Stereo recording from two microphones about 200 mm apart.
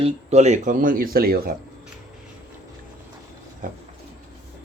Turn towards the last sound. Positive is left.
turn(degrees=-40)  # may be behind; listen again after turning